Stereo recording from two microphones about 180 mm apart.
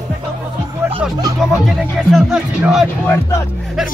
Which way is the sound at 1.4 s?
Centre (ahead or behind).